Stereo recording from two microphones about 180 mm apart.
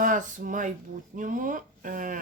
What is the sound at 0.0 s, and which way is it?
Speech, 45° right (ahead or behind).